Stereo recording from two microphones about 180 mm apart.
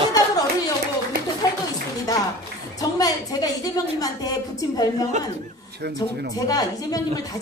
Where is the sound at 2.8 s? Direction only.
20° left (ahead or behind).